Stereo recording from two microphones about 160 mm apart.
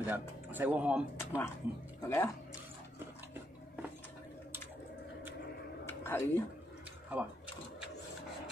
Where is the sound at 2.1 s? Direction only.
20° left (ahead or behind).